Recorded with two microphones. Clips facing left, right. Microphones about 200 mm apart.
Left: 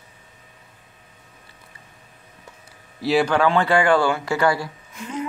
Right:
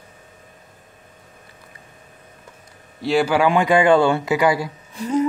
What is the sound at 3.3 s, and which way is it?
Speech, 15° right (ahead or behind).